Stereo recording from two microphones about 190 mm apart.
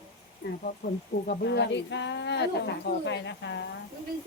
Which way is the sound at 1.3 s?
65° left (ahead or behind).